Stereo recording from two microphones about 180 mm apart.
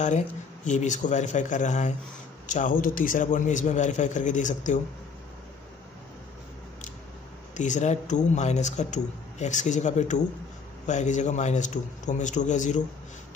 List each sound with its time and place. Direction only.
0.7 s a man's voice: 45° left (ahead or behind)
7.5 s a man's voice: 45° left (ahead or behind)